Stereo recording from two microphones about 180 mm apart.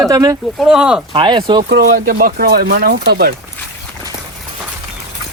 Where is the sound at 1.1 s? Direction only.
25° right (ahead or behind).